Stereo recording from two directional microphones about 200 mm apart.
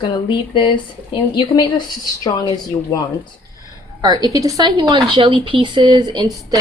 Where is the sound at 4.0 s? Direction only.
20° right (ahead or behind).